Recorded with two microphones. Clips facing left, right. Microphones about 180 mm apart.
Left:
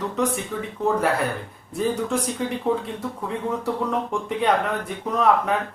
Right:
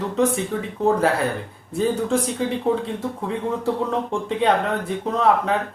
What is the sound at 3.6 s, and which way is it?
Speech, 30° right (ahead or behind).